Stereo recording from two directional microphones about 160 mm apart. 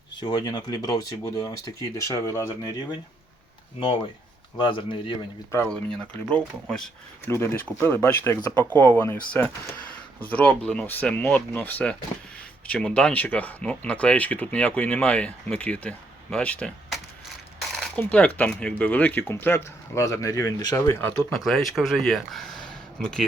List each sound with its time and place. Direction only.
0.2 s speech: 25° left (ahead or behind)
4.5 s speech: 30° left (ahead or behind)
5.6 s speech: 5° left (ahead or behind)
7.3 s speech: 15° left (ahead or behind)
17.6 s mechanisms: centre (ahead or behind)
18.0 s speech: 10° left (ahead or behind)
21.3 s speech: centre (ahead or behind)